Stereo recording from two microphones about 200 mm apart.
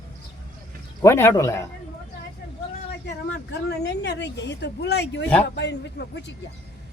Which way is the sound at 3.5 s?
55° left (ahead or behind).